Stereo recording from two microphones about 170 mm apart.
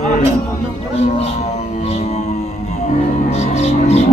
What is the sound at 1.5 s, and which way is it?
Music, 40° left (ahead or behind).